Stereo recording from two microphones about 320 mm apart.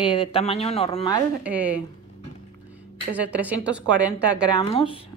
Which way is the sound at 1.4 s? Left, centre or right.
Centre.